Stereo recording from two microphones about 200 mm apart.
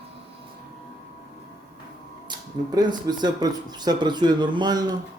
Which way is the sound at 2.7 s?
20° right (ahead or behind).